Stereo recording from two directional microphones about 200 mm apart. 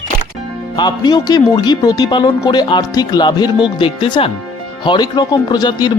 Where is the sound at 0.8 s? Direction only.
20° left (ahead or behind).